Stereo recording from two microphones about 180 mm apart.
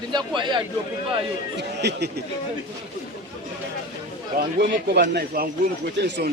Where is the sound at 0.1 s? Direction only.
25° right (ahead or behind).